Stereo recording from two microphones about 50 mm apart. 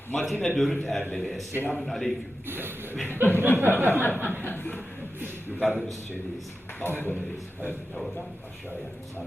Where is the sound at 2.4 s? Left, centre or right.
Right.